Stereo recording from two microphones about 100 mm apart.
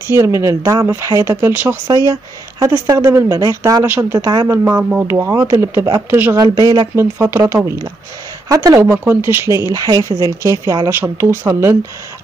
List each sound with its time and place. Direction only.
0.1 s speech: 30° right (ahead or behind)
1.9 s speech: 35° right (ahead or behind)
3.8 s speech: 15° right (ahead or behind); by 6.9 s 45° right (ahead or behind)
7.0 s speech: 25° right (ahead or behind)